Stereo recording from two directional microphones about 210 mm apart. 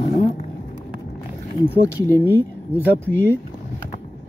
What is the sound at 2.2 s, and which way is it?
Speech, 10° right (ahead or behind).